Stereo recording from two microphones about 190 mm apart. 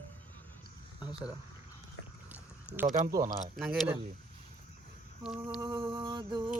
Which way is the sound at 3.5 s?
Centre (ahead or behind).